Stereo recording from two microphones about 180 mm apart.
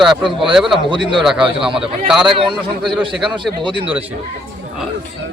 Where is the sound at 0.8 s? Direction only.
25° right (ahead or behind).